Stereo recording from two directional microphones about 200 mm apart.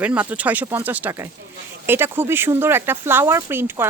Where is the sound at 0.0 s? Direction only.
10° right (ahead or behind).